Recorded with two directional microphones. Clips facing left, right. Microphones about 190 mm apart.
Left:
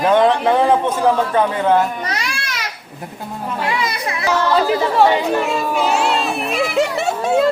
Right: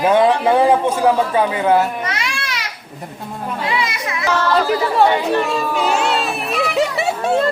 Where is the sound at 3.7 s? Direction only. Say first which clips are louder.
Even; 40° left (ahead or behind).